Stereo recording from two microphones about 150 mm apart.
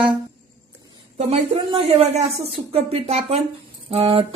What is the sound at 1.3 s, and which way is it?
Speech, 45° right (ahead or behind).